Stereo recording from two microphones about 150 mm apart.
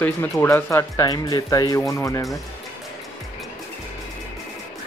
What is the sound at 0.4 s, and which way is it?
Speech, 15° left (ahead or behind).